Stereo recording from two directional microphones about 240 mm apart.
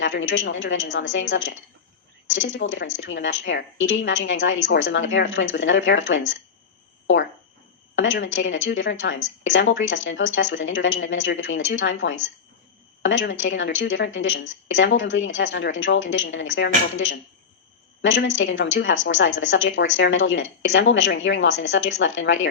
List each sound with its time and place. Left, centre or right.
0.0 s a woman's voice: left
7.9 s a woman's voice: left
18.3 s a woman's voice: left